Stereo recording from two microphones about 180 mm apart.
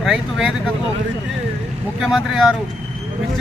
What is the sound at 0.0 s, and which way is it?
Speech, 5° right (ahead or behind).